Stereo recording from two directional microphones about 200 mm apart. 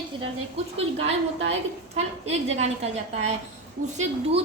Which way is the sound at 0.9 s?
30° right (ahead or behind).